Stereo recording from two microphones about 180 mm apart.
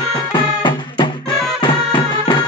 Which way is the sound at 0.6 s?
25° left (ahead or behind).